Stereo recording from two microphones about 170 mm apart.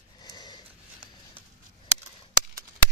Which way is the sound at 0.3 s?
25° left (ahead or behind).